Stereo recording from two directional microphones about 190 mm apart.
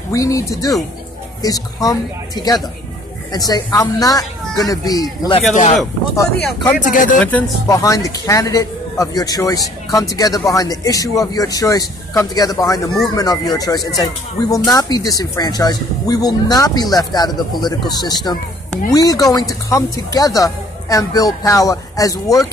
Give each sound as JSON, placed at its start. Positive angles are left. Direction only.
{"t": 0.1, "sound": "speech", "side_deg": 15}
{"t": 5.5, "sound": "speech", "side_deg": 40}
{"t": 6.9, "sound": "speech", "side_deg": 45}
{"t": 7.2, "sound": "speech", "side_deg": 10}